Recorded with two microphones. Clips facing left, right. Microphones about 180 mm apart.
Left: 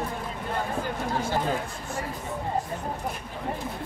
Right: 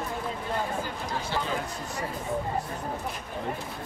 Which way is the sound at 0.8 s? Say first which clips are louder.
Left 5 dB; 50° left (ahead or behind).